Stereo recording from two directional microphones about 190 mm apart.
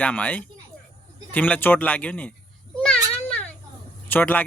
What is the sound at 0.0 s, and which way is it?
Speech, 5° left (ahead or behind).